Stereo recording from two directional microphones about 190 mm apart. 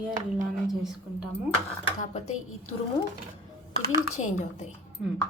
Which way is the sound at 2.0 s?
35° left (ahead or behind).